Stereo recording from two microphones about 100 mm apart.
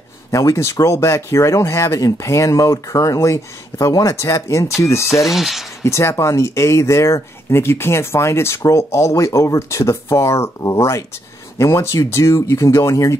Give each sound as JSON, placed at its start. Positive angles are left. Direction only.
{"t": 0.3, "sound": "speech", "side_deg": 30}
{"t": 5.1, "sound": "speech", "side_deg": 0}
{"t": 5.9, "sound": "speech", "side_deg": 30}